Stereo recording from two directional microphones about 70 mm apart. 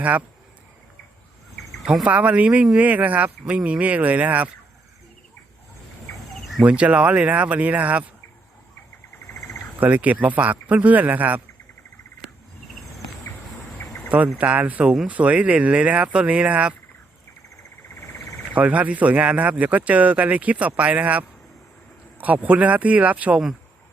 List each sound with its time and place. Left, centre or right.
1.8 s speech: centre
2.0 s speech: right
6.6 s speech: centre
9.8 s speech: right
14.3 s speech: right
18.5 s speech: right